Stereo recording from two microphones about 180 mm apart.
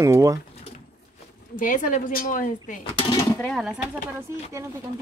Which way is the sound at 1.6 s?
50° left (ahead or behind).